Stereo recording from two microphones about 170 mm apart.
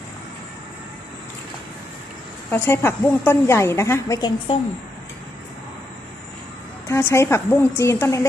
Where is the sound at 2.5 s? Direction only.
15° left (ahead or behind).